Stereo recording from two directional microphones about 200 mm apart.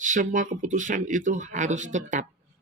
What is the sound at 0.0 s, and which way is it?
A man's voice, 40° right (ahead or behind).